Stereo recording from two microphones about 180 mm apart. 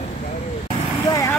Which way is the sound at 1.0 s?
20° left (ahead or behind).